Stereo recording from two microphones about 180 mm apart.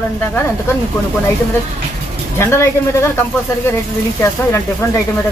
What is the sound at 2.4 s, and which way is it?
Speech, 15° left (ahead or behind).